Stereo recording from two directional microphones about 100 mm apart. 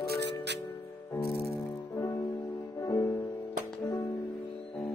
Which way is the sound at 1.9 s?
30° left (ahead or behind).